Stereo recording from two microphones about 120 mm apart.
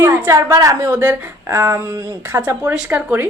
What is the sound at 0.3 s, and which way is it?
A woman's voice, 30° right (ahead or behind).